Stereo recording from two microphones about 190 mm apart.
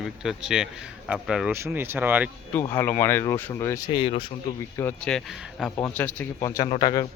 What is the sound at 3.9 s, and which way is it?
Speech, 30° left (ahead or behind).